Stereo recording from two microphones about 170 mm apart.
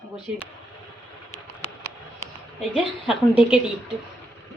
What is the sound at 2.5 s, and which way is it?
A woman's voice, centre (ahead or behind).